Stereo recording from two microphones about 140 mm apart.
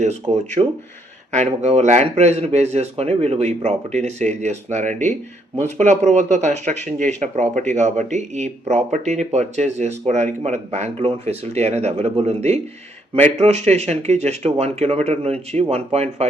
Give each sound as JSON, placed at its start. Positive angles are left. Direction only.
{"t": 0.3, "sound": "speech", "side_deg": -50}